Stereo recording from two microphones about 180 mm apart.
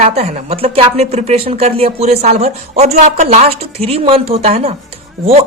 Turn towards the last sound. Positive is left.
turn(degrees=-35)  # may be behind; listen again after turning